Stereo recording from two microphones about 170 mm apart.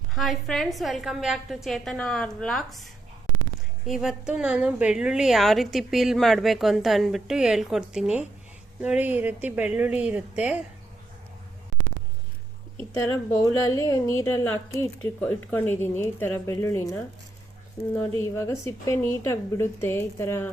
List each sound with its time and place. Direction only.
0.1 s a woman's voice: centre (ahead or behind)
3.8 s a woman's voice: centre (ahead or behind)
12.9 s speech: 15° left (ahead or behind)
18.2 s speech: 15° left (ahead or behind)